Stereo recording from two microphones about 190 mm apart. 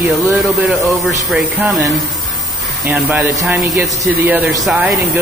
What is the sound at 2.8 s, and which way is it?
Speech, 10° right (ahead or behind).